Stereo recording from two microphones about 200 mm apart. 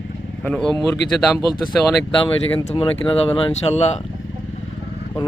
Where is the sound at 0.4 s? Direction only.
5° left (ahead or behind).